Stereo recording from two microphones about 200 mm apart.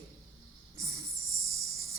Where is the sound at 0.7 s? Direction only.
15° right (ahead or behind).